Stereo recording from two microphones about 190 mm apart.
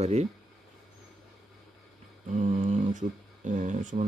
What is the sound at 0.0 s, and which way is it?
Speech, 35° right (ahead or behind).